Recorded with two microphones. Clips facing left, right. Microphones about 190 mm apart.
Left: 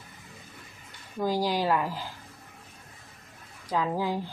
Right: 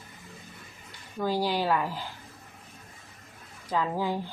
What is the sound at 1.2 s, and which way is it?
Speech, 10° left (ahead or behind).